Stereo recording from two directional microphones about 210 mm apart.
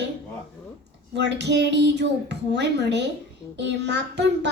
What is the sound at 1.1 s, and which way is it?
A child's voice, 55° right (ahead or behind).